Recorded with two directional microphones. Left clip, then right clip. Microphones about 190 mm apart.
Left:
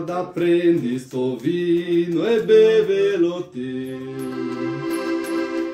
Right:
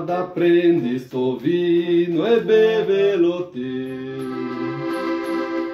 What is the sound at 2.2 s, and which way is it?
Mantra, 10° left (ahead or behind).